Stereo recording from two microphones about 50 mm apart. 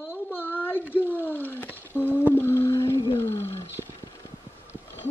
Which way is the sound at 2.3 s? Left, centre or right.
Left.